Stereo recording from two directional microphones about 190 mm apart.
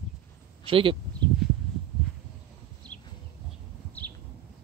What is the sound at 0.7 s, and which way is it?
Speech, 30° right (ahead or behind).